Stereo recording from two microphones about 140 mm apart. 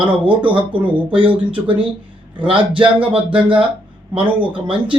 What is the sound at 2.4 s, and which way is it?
Speech, 35° right (ahead or behind).